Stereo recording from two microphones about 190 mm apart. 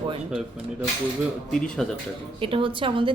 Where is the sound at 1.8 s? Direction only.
5° left (ahead or behind).